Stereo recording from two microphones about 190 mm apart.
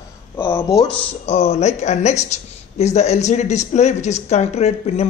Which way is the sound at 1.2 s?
30° left (ahead or behind).